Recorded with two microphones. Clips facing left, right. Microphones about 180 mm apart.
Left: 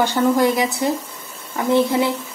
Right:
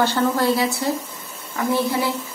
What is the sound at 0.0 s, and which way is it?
Speech, 15° left (ahead or behind).